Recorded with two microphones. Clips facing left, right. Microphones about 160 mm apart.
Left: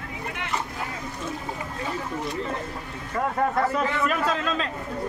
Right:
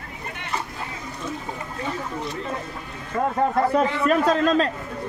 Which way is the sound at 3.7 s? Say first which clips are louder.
Right 5 dB; 40° right (ahead or behind).